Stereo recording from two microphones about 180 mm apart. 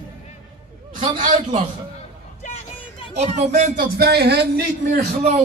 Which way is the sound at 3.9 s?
65° right (ahead or behind).